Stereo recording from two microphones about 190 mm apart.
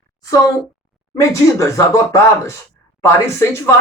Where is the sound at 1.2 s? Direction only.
15° left (ahead or behind).